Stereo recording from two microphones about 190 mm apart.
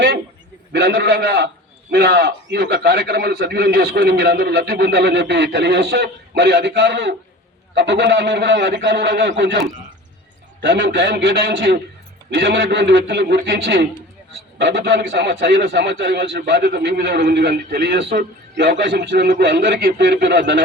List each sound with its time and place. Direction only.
0.7 s a man's voice: 65° right (ahead or behind)